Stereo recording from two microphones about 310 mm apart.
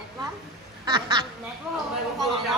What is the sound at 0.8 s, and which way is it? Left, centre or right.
Speech, centre.